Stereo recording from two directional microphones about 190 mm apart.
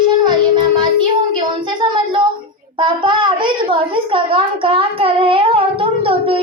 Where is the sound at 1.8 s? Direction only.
25° right (ahead or behind).